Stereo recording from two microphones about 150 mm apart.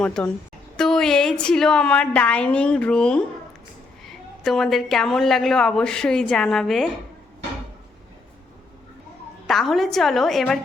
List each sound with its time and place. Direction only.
0.0 s a woman's voice: 5° left (ahead or behind)
9.5 s a woman's voice: centre (ahead or behind)